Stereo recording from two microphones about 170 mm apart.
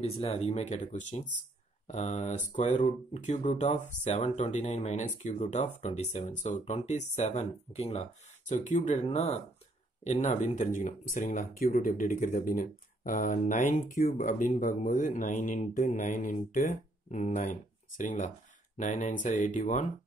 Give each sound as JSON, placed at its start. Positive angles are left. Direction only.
{"t": 0.0, "sound": "speech", "side_deg": 35}